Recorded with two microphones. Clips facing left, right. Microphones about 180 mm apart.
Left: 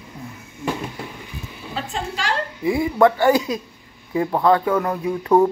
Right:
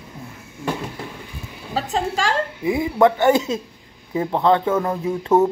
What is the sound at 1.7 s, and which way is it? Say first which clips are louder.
Speech: right 5 dB; 40° right (ahead or behind).